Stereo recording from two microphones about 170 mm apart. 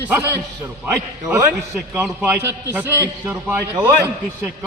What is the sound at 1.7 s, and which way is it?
A man's voice, 5° right (ahead or behind).